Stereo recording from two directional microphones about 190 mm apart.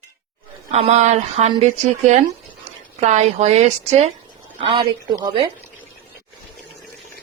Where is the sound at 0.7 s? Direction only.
35° right (ahead or behind).